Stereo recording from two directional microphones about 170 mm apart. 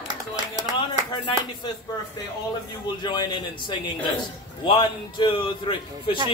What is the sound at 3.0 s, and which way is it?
A man's voice, 25° left (ahead or behind).